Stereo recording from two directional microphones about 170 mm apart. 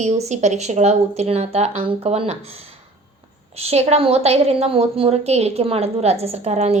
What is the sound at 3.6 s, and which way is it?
A woman's voice, 35° right (ahead or behind).